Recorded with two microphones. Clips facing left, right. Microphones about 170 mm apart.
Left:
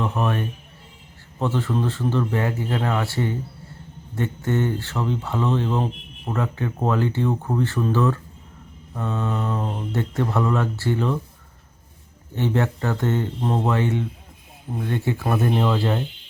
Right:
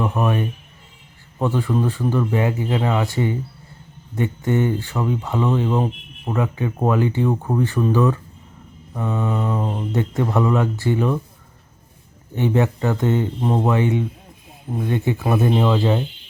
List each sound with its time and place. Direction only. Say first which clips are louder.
0.0 s speech: right 3 dB; 10° right (ahead or behind)
12.3 s speech: right 3 dB; 15° right (ahead or behind)